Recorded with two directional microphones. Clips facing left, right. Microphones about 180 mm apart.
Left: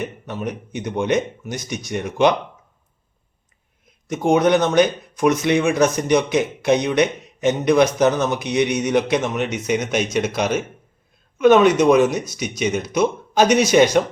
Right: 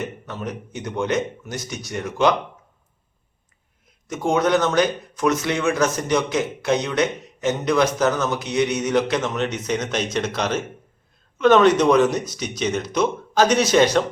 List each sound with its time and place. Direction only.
0.0 s speech: 15° left (ahead or behind)
4.1 s speech: 15° left (ahead or behind)